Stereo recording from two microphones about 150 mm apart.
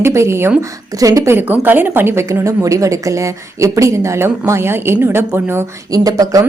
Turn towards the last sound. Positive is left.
turn(degrees=-25)  # may be behind; listen again after turning